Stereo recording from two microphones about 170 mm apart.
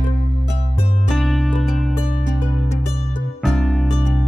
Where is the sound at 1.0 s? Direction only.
Centre (ahead or behind).